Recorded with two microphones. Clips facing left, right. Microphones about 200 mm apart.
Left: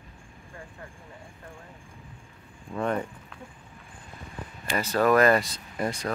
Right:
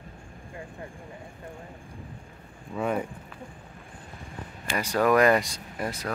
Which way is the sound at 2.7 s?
5° right (ahead or behind).